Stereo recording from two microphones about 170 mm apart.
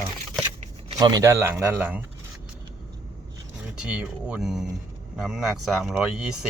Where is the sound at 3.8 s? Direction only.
5° right (ahead or behind).